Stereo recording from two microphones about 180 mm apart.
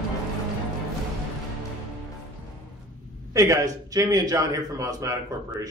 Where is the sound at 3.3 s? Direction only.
15° right (ahead or behind).